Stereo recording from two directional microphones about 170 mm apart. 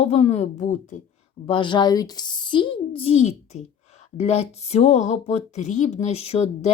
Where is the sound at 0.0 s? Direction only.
40° left (ahead or behind).